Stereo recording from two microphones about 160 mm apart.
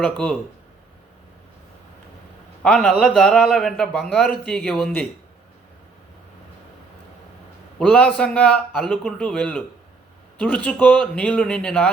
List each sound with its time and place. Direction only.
0.0 s a man's voice: 5° left (ahead or behind)
2.6 s speech: 5° left (ahead or behind)
7.8 s a man's voice: 5° left (ahead or behind)